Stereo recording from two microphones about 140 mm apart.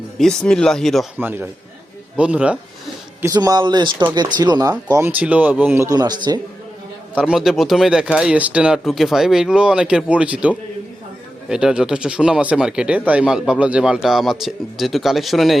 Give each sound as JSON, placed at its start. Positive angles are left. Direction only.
{"t": 0.2, "sound": "speech", "side_deg": 5}
{"t": 1.2, "sound": "a man's voice", "side_deg": -15}
{"t": 3.3, "sound": "speech", "side_deg": -30}
{"t": 4.9, "sound": "a man's voice", "side_deg": -20}
{"t": 7.2, "sound": "speech", "side_deg": -5}